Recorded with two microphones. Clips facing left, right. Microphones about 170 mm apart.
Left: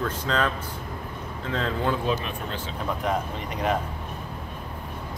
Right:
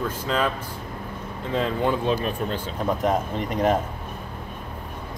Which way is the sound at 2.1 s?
40° right (ahead or behind).